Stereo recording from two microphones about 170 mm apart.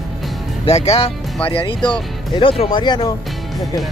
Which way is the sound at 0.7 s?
40° left (ahead or behind).